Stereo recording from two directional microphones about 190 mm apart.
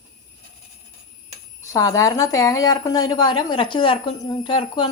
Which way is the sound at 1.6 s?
15° left (ahead or behind).